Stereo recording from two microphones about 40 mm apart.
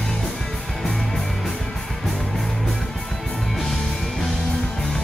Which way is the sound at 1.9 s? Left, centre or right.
Centre.